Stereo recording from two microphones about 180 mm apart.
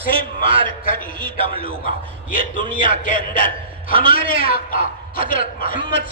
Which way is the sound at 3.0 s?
50° left (ahead or behind).